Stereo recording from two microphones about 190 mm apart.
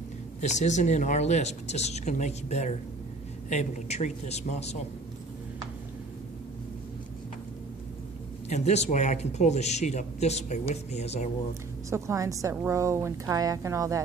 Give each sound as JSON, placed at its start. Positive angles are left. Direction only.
{"t": 0.4, "sound": "speech", "side_deg": 40}
{"t": 8.5, "sound": "speech", "side_deg": 35}
{"t": 11.9, "sound": "a woman's voice", "side_deg": -15}